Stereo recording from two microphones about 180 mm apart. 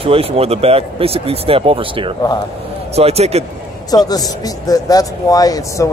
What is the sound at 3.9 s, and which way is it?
Speech, 20° left (ahead or behind).